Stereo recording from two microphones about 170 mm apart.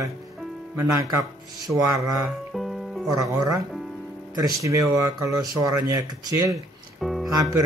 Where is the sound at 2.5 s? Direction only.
Centre (ahead or behind).